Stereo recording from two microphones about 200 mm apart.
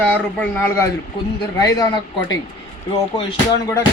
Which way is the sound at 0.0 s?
5° left (ahead or behind).